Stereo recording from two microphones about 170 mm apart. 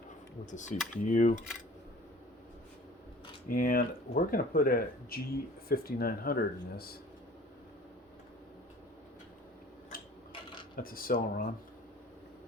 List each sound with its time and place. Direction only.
0.5 s speech: 45° left (ahead or behind)
3.5 s speech: 55° left (ahead or behind)
9.9 s a sound: 60° left (ahead or behind)
10.8 s speech: 60° left (ahead or behind)